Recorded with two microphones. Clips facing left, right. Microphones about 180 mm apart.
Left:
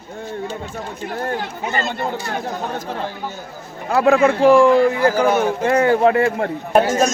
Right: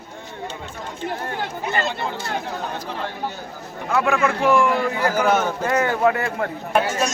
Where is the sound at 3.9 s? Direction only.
35° left (ahead or behind).